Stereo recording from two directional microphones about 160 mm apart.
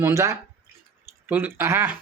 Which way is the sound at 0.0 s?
20° right (ahead or behind).